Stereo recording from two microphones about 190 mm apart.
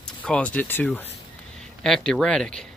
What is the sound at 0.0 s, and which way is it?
Speech, 5° left (ahead or behind).